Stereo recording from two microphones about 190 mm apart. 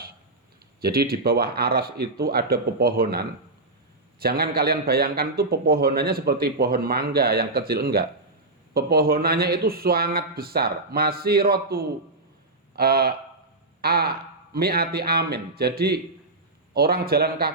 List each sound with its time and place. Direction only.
0.8 s a man's voice: 55° right (ahead or behind)